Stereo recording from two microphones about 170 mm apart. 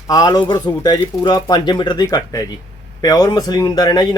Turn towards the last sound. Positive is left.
turn(degrees=25)  # may be behind; listen again after turning